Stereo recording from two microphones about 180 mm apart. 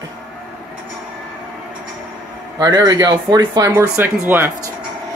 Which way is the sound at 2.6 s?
20° right (ahead or behind).